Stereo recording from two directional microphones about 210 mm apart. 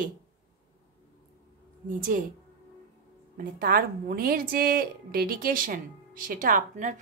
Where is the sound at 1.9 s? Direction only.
40° right (ahead or behind).